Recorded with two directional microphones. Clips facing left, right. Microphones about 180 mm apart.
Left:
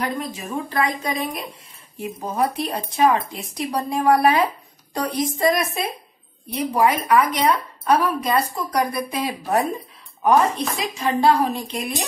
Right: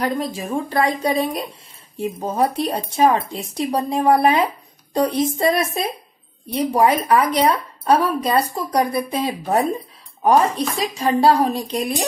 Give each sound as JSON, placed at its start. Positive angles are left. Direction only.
{"t": 0.0, "sound": "a woman's voice", "side_deg": -30}
{"t": 11.0, "sound": "a woman's voice", "side_deg": -35}